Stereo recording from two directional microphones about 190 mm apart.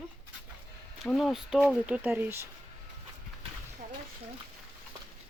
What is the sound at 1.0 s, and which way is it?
Speech, centre (ahead or behind).